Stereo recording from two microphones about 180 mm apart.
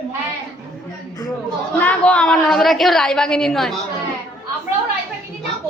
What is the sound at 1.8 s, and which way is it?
A woman's voice, 5° left (ahead or behind).